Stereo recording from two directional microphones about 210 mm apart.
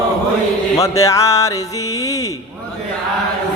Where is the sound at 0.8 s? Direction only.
15° left (ahead or behind).